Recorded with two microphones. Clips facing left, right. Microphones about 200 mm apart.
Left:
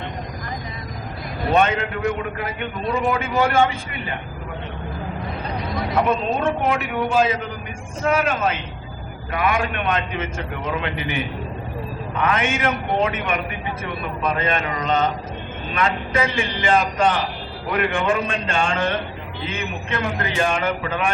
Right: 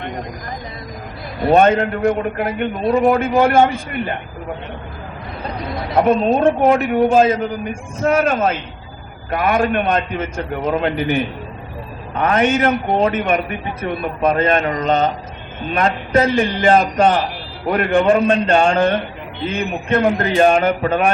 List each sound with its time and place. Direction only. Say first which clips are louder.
1.5 s a man's voice: right 6 dB; 45° right (ahead or behind)
6.0 s a man's voice: right 8 dB; 45° right (ahead or behind)